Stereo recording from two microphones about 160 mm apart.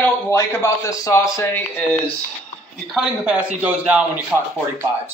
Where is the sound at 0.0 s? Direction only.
15° left (ahead or behind).